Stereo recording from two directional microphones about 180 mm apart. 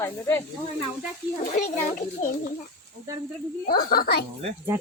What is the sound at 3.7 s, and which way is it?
Speech, 55° left (ahead or behind).